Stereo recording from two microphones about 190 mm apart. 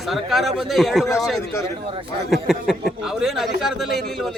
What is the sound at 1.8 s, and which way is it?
Speech, 30° right (ahead or behind).